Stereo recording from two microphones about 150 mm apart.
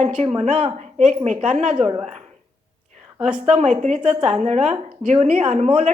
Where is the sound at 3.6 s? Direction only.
50° right (ahead or behind).